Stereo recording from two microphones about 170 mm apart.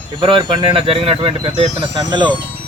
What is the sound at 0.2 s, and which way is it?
Speech, 30° right (ahead or behind).